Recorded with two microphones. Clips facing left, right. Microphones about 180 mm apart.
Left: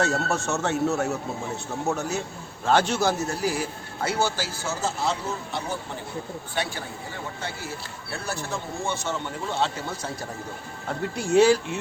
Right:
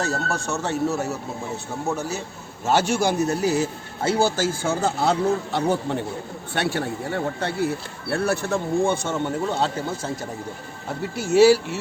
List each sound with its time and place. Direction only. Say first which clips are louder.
0.0 s speech: left 1 dB; centre (ahead or behind)
2.6 s a man's voice: right 1 dB; 10° right (ahead or behind); by 4.3 s 25° right (ahead or behind)
4.4 s speech: right 7 dB; 50° right (ahead or behind)
11.2 s speech: right 3 dB; 5° right (ahead or behind)